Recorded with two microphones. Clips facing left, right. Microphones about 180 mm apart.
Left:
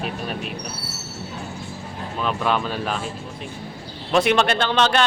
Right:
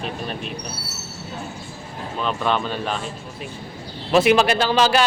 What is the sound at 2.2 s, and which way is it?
Speech, 5° left (ahead or behind).